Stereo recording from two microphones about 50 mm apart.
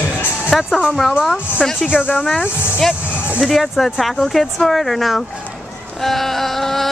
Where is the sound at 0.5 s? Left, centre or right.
Centre.